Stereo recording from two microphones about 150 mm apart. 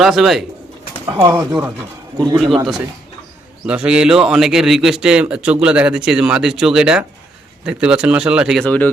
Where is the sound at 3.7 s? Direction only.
5° right (ahead or behind).